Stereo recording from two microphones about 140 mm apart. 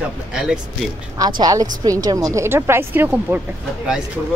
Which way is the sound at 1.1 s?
30° right (ahead or behind).